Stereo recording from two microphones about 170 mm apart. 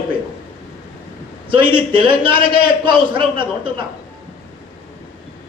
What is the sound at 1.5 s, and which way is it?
A man's voice, 30° right (ahead or behind).